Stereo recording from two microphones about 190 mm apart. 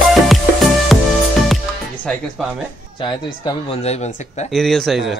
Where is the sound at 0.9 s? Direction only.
Centre (ahead or behind).